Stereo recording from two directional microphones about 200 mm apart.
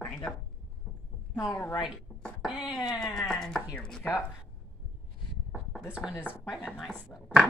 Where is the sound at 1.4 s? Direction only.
5° left (ahead or behind).